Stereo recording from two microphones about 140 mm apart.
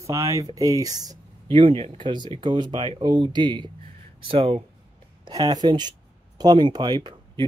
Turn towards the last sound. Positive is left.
turn(degrees=-30)  # may be behind; listen again after turning